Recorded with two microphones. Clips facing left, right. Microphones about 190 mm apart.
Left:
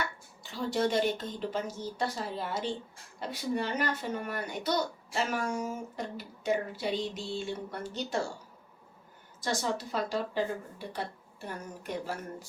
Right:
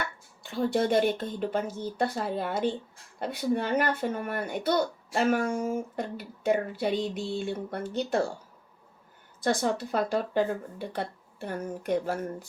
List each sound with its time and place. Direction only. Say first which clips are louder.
0.4 s speech: right 4 dB; 55° right (ahead or behind)
9.4 s speech: right 5 dB; 55° right (ahead or behind)